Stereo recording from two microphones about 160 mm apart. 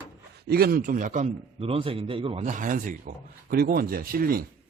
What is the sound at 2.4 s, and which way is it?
Speech, 55° right (ahead or behind).